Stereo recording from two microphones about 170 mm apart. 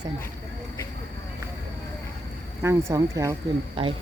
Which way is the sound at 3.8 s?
30° right (ahead or behind).